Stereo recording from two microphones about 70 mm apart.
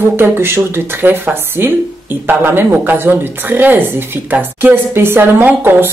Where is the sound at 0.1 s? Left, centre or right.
Right.